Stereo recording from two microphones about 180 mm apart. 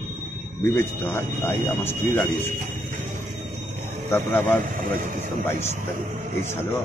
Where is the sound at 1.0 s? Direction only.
15° left (ahead or behind).